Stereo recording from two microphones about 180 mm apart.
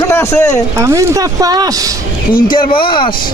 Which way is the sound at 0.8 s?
15° right (ahead or behind).